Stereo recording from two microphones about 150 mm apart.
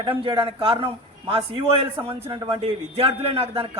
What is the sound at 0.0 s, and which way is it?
A man's voice, 35° right (ahead or behind).